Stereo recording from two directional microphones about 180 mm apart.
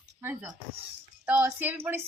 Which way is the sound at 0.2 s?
10° right (ahead or behind).